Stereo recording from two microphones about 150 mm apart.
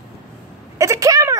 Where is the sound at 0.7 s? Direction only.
20° right (ahead or behind).